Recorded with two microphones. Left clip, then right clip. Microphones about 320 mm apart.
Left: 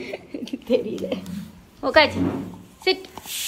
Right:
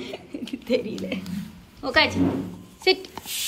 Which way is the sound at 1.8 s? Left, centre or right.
Centre.